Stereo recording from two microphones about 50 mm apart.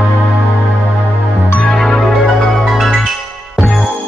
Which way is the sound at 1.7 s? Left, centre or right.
Centre.